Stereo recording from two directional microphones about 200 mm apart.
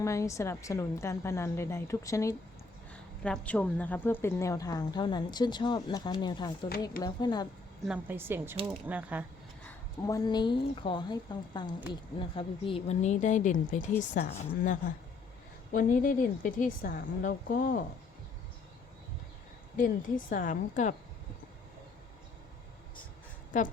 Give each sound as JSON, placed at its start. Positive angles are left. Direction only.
{"t": 0.0, "sound": "a woman's voice", "side_deg": 15}
{"t": 7.9, "sound": "a woman's voice", "side_deg": -10}
{"t": 9.6, "sound": "a woman's voice", "side_deg": 15}
{"t": 19.7, "sound": "speech", "side_deg": 40}
{"t": 23.5, "sound": "a woman's voice", "side_deg": 40}